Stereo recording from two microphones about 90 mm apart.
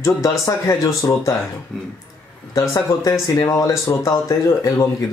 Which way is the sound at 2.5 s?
40° left (ahead or behind).